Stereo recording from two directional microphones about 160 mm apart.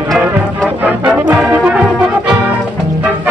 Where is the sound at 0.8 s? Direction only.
10° right (ahead or behind).